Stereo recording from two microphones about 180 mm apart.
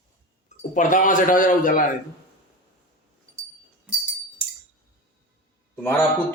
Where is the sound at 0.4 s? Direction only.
45° left (ahead or behind).